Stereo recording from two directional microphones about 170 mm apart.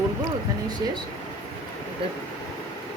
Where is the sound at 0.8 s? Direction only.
20° right (ahead or behind).